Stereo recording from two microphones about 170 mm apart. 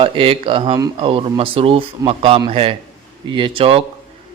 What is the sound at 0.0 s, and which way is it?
Speech, 35° right (ahead or behind).